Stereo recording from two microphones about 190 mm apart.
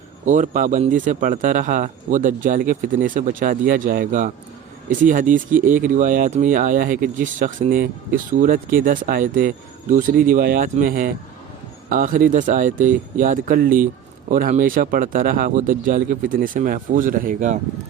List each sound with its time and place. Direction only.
0.3 s speech: 40° right (ahead or behind)